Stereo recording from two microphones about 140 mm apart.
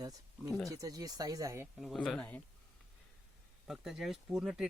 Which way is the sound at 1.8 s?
Centre (ahead or behind).